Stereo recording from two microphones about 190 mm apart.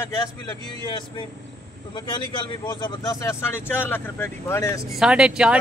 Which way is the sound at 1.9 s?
25° left (ahead or behind).